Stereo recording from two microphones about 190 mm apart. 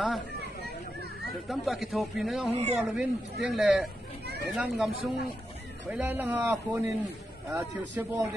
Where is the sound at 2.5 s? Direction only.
35° right (ahead or behind).